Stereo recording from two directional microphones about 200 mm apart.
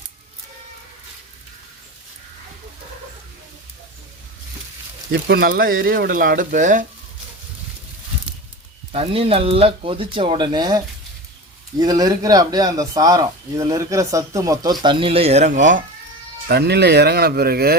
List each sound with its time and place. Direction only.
5.1 s speech: 55° right (ahead or behind); by 6.8 s 40° right (ahead or behind)
8.9 s speech: 30° right (ahead or behind)
16.5 s speech: 55° right (ahead or behind)